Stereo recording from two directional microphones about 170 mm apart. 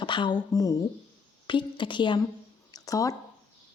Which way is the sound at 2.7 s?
20° left (ahead or behind).